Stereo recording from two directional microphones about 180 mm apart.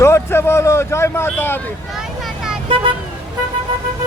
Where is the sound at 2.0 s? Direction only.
5° right (ahead or behind).